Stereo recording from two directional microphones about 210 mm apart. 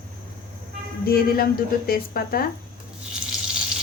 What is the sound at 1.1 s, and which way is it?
A woman's voice, 45° left (ahead or behind).